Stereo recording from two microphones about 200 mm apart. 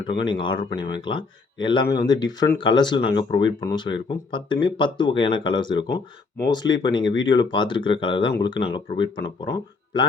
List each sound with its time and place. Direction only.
0.0 s speech: 25° left (ahead or behind)